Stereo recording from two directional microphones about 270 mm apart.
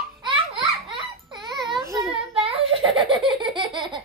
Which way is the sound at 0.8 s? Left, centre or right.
Centre.